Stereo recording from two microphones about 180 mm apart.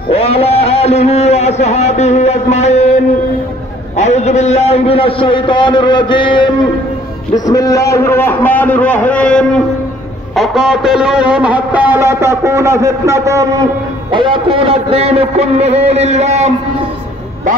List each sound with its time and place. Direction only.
0.1 s a man's voice: 35° left (ahead or behind)
3.9 s a man's voice: 40° left (ahead or behind); by 9.6 s 5° left (ahead or behind)
10.3 s a sound: centre (ahead or behind); by 13.5 s 15° right (ahead or behind)
14.1 s a man's voice: 30° right (ahead or behind)